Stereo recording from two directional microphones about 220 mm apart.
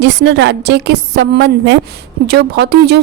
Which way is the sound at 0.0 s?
50° right (ahead or behind).